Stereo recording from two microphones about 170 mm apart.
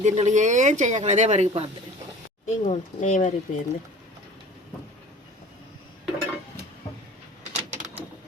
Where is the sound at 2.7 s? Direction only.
45° left (ahead or behind).